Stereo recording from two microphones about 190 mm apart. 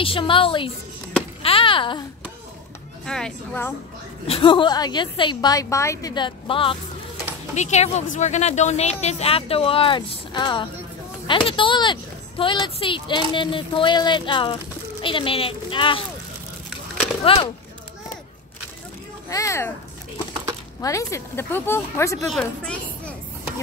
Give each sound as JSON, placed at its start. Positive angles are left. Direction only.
{"t": 0.0, "sound": "a child's voice", "side_deg": 30}
{"t": 3.1, "sound": "speech", "side_deg": 5}
{"t": 4.3, "sound": "speech", "side_deg": 25}
{"t": 17.2, "sound": "speech", "side_deg": 30}
{"t": 19.2, "sound": "speech", "side_deg": 15}
{"t": 20.8, "sound": "speech", "side_deg": 15}